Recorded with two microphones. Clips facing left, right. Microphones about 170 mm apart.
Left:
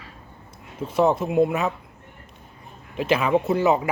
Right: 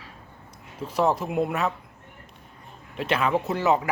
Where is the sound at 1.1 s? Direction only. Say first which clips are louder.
Left 3 dB; 25° left (ahead or behind).